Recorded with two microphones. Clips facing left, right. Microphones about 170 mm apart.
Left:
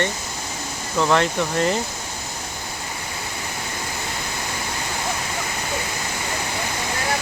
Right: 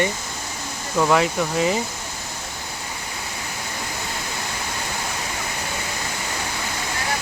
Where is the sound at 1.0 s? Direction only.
5° right (ahead or behind).